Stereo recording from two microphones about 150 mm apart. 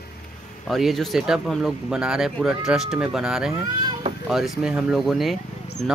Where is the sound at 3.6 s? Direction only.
30° right (ahead or behind).